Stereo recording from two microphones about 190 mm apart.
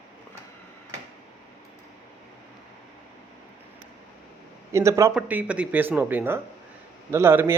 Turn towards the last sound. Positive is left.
turn(degrees=-15)  # may be behind; listen again after turning